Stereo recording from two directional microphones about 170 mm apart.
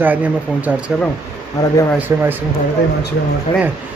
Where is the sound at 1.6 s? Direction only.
20° left (ahead or behind).